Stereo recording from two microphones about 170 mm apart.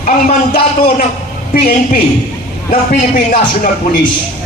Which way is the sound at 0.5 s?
60° left (ahead or behind).